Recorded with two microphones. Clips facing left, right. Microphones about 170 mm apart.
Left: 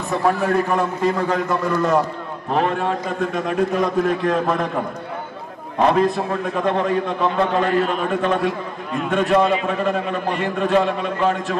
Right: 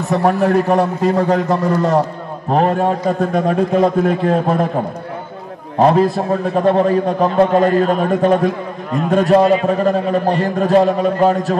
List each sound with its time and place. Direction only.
0.1 s a man's voice: 40° right (ahead or behind)
5.8 s a man's voice: 35° right (ahead or behind)